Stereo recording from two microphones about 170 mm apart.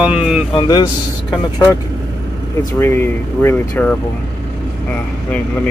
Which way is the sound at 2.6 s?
20° left (ahead or behind).